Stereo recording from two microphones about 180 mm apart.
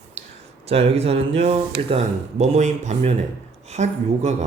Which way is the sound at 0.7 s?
35° right (ahead or behind).